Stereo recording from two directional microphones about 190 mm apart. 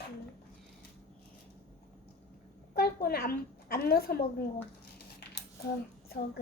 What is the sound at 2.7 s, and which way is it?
A woman's voice, 55° left (ahead or behind).